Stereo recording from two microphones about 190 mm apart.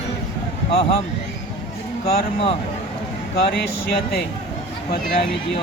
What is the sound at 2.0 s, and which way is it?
Speech, 30° left (ahead or behind).